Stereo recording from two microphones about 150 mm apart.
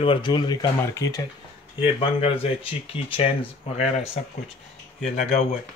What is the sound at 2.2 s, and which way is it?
Speech, 40° left (ahead or behind).